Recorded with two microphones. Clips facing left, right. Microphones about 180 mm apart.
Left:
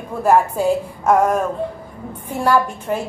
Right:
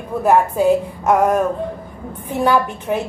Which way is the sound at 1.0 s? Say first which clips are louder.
Left 1 dB; 5° right (ahead or behind).